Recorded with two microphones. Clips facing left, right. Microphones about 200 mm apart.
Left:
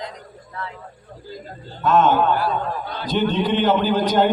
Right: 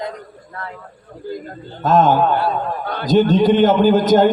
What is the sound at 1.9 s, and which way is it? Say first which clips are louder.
A man's voice: right 2 dB; 40° right (ahead or behind).